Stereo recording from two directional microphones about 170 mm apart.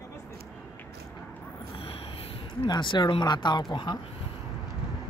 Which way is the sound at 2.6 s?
25° left (ahead or behind).